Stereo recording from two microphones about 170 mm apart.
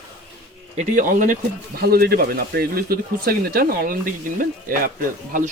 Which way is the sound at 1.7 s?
65° right (ahead or behind).